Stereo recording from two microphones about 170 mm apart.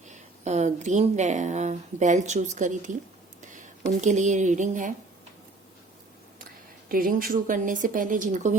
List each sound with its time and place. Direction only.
0.1 s speech: 45° right (ahead or behind)
4.0 s speech: 45° right (ahead or behind)
6.4 s speech: 55° right (ahead or behind)